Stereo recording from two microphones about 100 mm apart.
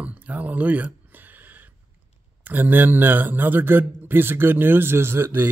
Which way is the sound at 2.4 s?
20° right (ahead or behind).